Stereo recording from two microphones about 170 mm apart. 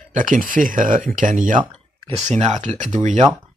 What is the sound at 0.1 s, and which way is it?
Speech, 50° right (ahead or behind).